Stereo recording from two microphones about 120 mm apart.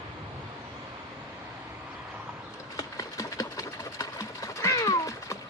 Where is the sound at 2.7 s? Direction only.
30° left (ahead or behind).